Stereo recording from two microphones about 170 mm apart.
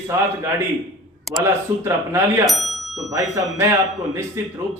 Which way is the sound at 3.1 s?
20° right (ahead or behind).